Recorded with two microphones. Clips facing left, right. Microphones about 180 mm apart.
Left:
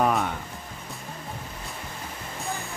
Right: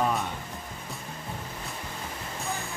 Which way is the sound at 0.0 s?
65° left (ahead or behind).